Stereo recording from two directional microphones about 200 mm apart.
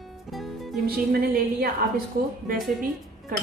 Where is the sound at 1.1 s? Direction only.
45° right (ahead or behind).